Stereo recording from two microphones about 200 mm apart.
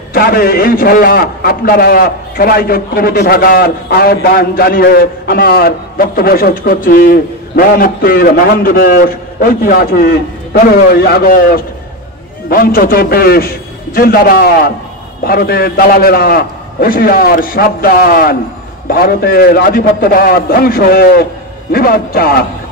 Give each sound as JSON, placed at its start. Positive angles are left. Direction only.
{"t": 0.1, "sound": "a man's voice", "side_deg": 45}